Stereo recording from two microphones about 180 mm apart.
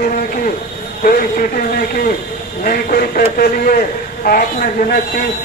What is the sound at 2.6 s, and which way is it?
A man's voice, 55° left (ahead or behind).